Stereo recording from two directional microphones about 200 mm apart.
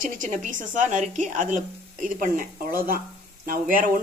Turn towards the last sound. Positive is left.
turn(degrees=-45)  # may be behind; listen again after turning